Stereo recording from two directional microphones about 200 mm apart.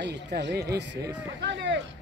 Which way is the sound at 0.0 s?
60° right (ahead or behind).